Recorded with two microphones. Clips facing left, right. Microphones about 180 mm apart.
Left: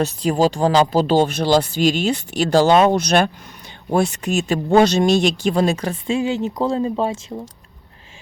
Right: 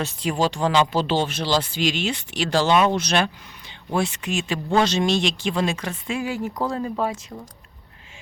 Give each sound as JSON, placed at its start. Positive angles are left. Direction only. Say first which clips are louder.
{"t": 0.0, "sound": "speech", "louder": "left 6 dB", "side_deg": 40}